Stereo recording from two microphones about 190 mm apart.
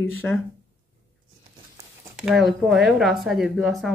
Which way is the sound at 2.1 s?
Centre (ahead or behind).